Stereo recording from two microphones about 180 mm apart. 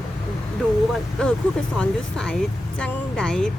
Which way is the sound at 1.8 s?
5° left (ahead or behind).